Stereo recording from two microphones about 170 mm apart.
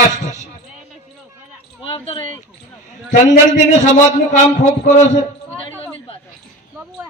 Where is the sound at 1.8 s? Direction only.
30° left (ahead or behind).